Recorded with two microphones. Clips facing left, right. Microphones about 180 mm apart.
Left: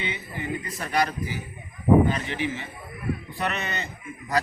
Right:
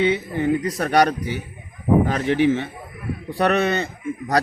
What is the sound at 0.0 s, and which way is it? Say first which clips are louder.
Speech: right 13 dB; 70° right (ahead or behind).